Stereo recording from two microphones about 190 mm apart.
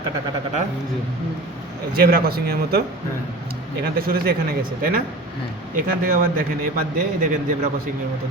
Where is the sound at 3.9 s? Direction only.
50° right (ahead or behind).